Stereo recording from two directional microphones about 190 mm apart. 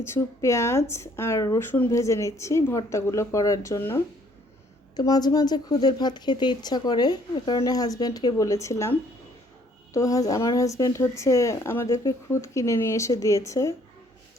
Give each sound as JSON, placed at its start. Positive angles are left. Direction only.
{"t": 0.0, "sound": "speech", "side_deg": 15}